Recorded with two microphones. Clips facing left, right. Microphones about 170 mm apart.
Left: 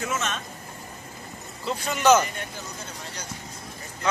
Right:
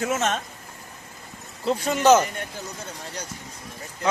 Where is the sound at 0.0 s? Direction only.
50° right (ahead or behind).